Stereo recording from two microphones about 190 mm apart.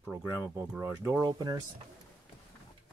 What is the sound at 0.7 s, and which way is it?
Speech, 10° right (ahead or behind).